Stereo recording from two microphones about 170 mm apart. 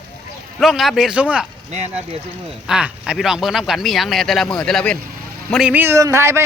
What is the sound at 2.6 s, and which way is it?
A man's voice, 5° right (ahead or behind).